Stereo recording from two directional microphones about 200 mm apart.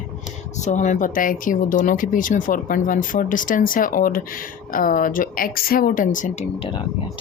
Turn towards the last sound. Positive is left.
turn(degrees=30)  # may be behind; listen again after turning